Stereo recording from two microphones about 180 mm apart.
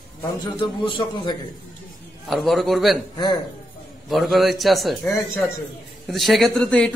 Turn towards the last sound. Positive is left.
turn(degrees=5)  # may be behind; listen again after turning